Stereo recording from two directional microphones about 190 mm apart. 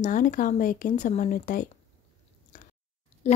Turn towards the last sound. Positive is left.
turn(degrees=35)  # may be behind; listen again after turning